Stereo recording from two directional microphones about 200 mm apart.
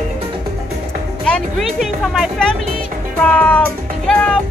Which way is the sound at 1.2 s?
Centre (ahead or behind).